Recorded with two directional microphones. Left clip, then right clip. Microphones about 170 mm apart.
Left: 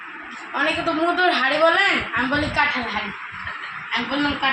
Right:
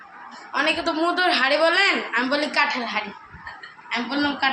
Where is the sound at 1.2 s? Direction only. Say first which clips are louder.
Left 1 dB; 25° right (ahead or behind).